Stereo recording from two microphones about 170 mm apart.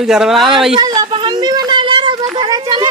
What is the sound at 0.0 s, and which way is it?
Speech, centre (ahead or behind).